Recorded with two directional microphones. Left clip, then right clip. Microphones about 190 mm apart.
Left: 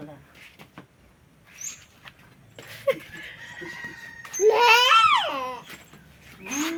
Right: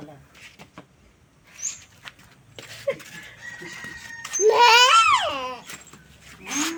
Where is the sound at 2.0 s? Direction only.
55° right (ahead or behind).